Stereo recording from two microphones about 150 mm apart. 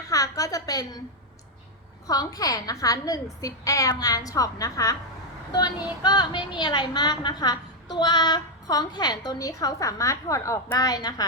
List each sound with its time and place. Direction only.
0.1 s a woman's voice: 25° left (ahead or behind)
2.0 s a woman's voice: 25° left (ahead or behind)